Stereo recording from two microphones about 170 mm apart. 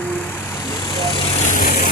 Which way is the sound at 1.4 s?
55° left (ahead or behind).